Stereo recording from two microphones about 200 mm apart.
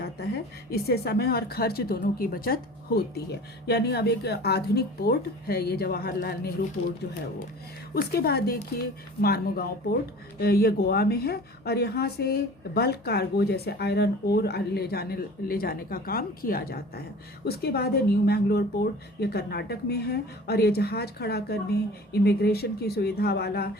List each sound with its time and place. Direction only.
0.7 s a woman's voice: 50° left (ahead or behind)
7.9 s a woman's voice: 50° left (ahead or behind)